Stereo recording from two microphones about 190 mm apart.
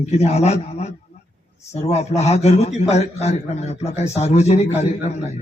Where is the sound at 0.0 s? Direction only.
35° left (ahead or behind).